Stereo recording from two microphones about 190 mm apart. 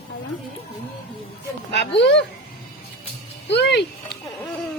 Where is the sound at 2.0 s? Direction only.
65° left (ahead or behind).